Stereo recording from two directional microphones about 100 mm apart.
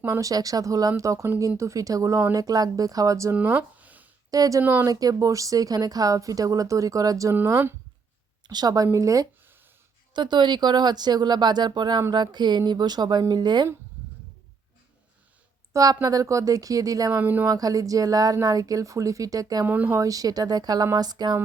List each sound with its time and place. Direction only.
0.0 s speech: 30° right (ahead or behind)
3.3 s a sound: 20° right (ahead or behind)
4.3 s speech: 35° right (ahead or behind)
4.6 s speech: 20° right (ahead or behind)
4.9 s speech: 40° right (ahead or behind)
7.3 s speech: 25° right (ahead or behind)
8.4 s speech: 45° right (ahead or behind)
10.2 s speech: 50° right (ahead or behind)
15.7 s speech: 35° right (ahead or behind)
17.1 s speech: 20° right (ahead or behind)
17.5 s speech: 40° right (ahead or behind)
19.6 s speech: 15° right (ahead or behind)
20.0 s speech: 35° right (ahead or behind)